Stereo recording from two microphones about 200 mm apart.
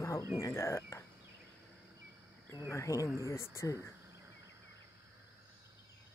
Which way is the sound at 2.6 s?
15° left (ahead or behind).